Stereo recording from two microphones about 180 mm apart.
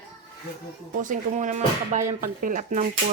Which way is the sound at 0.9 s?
45° right (ahead or behind).